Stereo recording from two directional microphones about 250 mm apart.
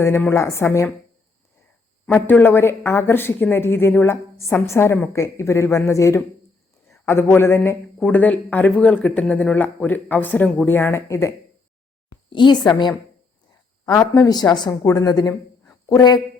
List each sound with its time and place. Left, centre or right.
0.0 s speech: centre
2.0 s speech: centre